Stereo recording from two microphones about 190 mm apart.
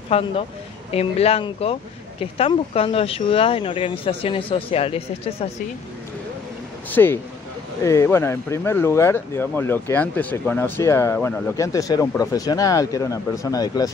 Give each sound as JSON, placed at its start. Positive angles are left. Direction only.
{"t": 0.1, "sound": "speech", "side_deg": 30}
{"t": 6.9, "sound": "speech", "side_deg": 10}